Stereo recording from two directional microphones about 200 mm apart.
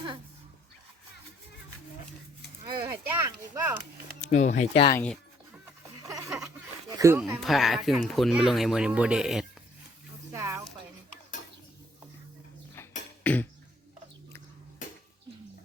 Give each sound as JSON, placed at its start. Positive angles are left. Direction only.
{"t": 2.6, "sound": "speech", "side_deg": -20}
{"t": 4.2, "sound": "speech", "side_deg": 35}
{"t": 4.9, "sound": "speech", "side_deg": 10}
{"t": 6.9, "sound": "speech", "side_deg": -15}
{"t": 7.4, "sound": "speech", "side_deg": 0}
{"t": 10.3, "sound": "a sound", "side_deg": -15}
{"t": 13.2, "sound": "a sound", "side_deg": 5}